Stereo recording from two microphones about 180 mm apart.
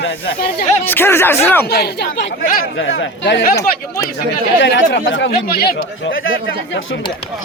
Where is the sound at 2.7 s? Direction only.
85° left.